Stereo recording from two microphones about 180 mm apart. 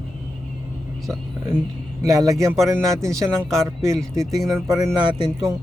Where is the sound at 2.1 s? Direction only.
20° right (ahead or behind).